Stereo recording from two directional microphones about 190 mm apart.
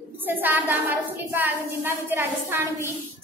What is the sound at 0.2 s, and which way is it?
A woman's voice, 10° right (ahead or behind).